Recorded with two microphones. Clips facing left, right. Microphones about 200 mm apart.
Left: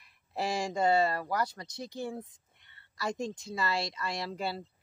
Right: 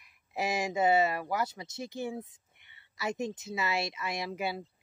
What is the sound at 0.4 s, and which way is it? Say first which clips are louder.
Speech: right 1 dB; 20° right (ahead or behind).